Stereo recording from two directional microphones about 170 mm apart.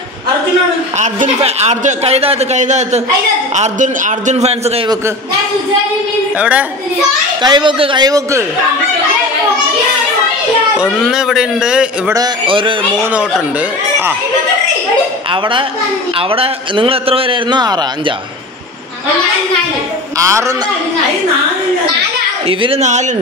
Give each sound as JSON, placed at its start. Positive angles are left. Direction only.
{"t": 0.9, "sound": "a man's voice", "side_deg": -45}
{"t": 6.3, "sound": "speech", "side_deg": -10}
{"t": 7.4, "sound": "a man's voice", "side_deg": -30}
{"t": 10.8, "sound": "speech", "side_deg": -5}
{"t": 12.1, "sound": "a man's voice", "side_deg": -25}
{"t": 13.0, "sound": "speech", "side_deg": -10}
{"t": 15.3, "sound": "a man's voice", "side_deg": -30}
{"t": 20.2, "sound": "speech", "side_deg": -15}
{"t": 22.5, "sound": "a man's voice", "side_deg": -35}